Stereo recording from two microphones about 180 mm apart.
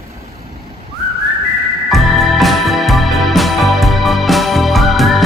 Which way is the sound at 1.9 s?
Centre (ahead or behind).